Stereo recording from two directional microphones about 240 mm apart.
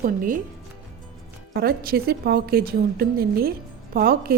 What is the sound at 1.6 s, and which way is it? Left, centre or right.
A woman's voice, right.